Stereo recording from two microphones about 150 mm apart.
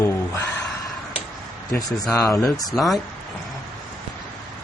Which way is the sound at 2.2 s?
15° left (ahead or behind).